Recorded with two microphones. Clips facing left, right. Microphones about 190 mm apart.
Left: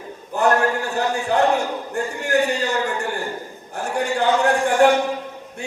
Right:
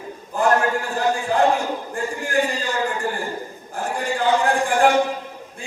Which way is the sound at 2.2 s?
70° left (ahead or behind).